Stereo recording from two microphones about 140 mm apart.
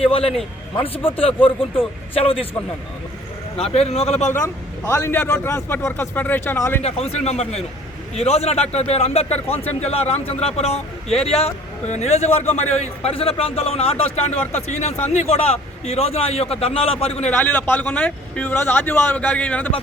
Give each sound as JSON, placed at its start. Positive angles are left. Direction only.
{"t": 0.0, "sound": "speech", "side_deg": 40}
{"t": 1.4, "sound": "speech", "side_deg": 40}
{"t": 3.6, "sound": "speech", "side_deg": 45}
{"t": 4.9, "sound": "a man's voice", "side_deg": 15}
{"t": 6.8, "sound": "speech", "side_deg": 50}
{"t": 17.2, "sound": "a man's voice", "side_deg": 10}